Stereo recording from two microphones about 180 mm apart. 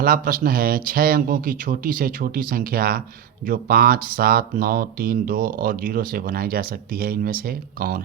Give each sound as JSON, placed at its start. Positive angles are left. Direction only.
{"t": 0.0, "sound": "speech", "side_deg": -50}